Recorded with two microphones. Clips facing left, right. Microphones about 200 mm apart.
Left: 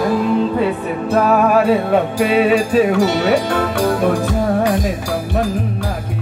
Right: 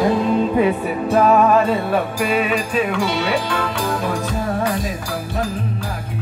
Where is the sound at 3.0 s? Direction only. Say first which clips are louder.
Left 6 dB; 50° left (ahead or behind).